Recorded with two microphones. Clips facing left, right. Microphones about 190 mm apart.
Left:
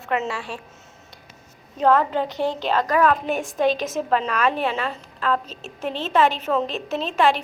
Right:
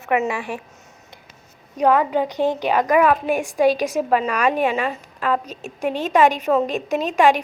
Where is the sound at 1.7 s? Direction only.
15° right (ahead or behind).